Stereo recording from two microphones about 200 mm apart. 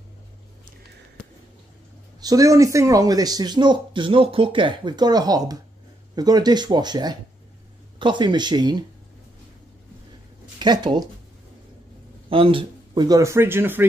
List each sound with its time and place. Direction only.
2.1 s speech: 20° right (ahead or behind)
10.6 s speech: 20° right (ahead or behind)
12.3 s speech: 25° right (ahead or behind); by 13.8 s 10° right (ahead or behind)